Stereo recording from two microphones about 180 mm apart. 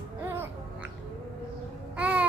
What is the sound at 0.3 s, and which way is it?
Music, 10° right (ahead or behind).